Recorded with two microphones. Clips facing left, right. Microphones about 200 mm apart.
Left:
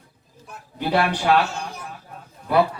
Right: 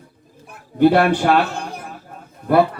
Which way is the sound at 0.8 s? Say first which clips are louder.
Right 9 dB; 50° right (ahead or behind).